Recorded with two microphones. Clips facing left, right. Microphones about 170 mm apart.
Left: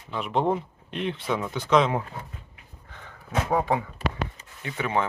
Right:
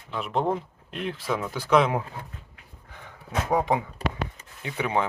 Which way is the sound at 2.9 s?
15° right (ahead or behind).